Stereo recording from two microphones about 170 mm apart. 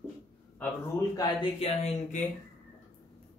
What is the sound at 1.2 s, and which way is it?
Speech, 30° left (ahead or behind).